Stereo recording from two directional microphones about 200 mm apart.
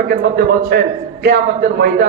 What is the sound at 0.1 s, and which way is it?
A man's voice, 55° right (ahead or behind).